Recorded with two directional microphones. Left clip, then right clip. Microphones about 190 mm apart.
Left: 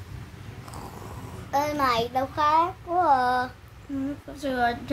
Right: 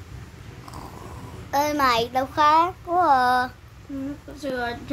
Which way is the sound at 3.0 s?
10° right (ahead or behind).